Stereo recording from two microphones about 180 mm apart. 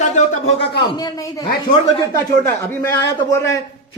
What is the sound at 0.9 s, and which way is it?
Speech, 20° left (ahead or behind).